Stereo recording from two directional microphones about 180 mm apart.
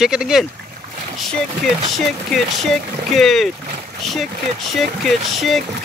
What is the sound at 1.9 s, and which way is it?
Speech, centre (ahead or behind).